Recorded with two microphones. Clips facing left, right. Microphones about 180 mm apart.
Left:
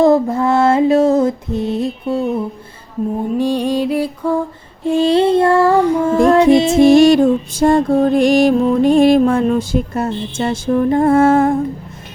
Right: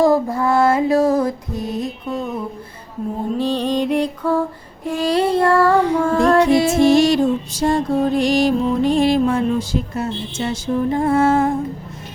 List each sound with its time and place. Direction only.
0.0 s music: 25° left (ahead or behind)
3.3 s mantra: 10° left (ahead or behind)
4.9 s music: 25° left (ahead or behind)
6.9 s music: 50° left (ahead or behind)